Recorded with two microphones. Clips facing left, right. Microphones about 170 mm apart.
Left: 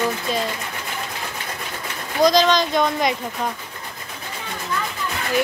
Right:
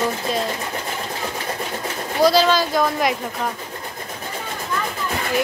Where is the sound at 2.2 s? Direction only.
5° right (ahead or behind).